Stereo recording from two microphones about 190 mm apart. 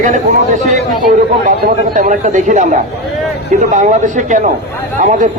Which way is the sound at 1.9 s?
45° right (ahead or behind).